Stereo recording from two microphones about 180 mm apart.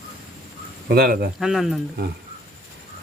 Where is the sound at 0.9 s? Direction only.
60° right (ahead or behind).